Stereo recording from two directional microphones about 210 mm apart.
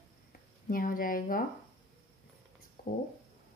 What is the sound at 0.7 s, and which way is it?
Speech, 40° left (ahead or behind).